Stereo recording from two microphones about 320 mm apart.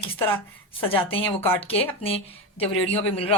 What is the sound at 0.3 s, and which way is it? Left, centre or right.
Speech, centre.